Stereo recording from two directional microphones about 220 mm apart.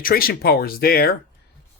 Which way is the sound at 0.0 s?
40° left (ahead or behind).